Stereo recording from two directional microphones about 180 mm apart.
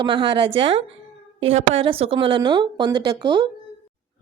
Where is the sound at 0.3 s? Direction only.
80° right.